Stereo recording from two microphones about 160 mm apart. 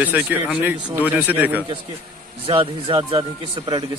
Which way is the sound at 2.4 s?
35° right (ahead or behind).